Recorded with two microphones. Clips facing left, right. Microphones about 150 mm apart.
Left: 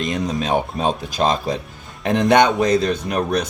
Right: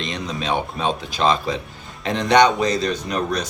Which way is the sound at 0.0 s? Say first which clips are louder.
Left 5 dB; 50° left (ahead or behind).